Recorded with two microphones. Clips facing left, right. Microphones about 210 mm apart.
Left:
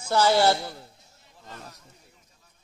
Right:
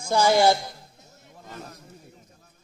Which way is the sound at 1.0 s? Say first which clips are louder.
Right 5 dB; 45° right (ahead or behind).